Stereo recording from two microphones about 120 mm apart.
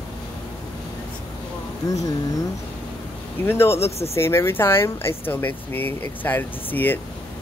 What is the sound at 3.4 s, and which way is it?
A man's voice, 20° left (ahead or behind).